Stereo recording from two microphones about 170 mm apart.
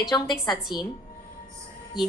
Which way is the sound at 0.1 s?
25° left (ahead or behind).